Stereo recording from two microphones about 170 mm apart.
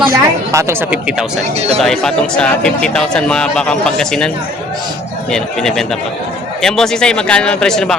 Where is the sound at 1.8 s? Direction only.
Centre (ahead or behind).